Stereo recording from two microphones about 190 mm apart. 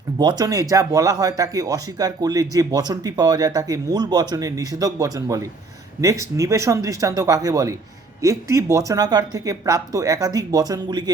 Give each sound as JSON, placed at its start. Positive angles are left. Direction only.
{"t": 0.2, "sound": "speech", "side_deg": -20}